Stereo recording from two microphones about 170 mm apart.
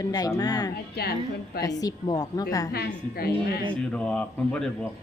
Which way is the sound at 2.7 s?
65° left (ahead or behind).